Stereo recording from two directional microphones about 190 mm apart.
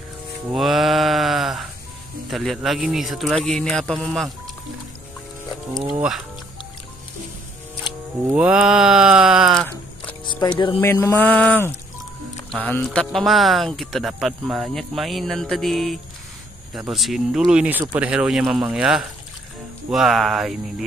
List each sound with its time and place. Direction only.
0.5 s music: centre (ahead or behind)
2.3 s speech: centre (ahead or behind)
5.9 s music: centre (ahead or behind)
8.3 s speech: 5° right (ahead or behind)
10.2 s speech: 25° left (ahead or behind)
10.8 s mantra: 10° left (ahead or behind)
12.6 s speech: 5° left (ahead or behind)